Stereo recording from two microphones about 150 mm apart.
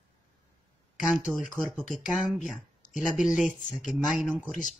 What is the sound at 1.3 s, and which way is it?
Speech, 15° right (ahead or behind).